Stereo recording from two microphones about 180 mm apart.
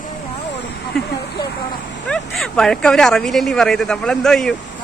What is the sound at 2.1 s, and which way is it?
Speech, 5° left (ahead or behind).